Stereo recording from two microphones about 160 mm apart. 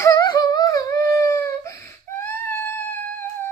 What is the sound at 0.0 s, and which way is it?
Humming, 20° left (ahead or behind).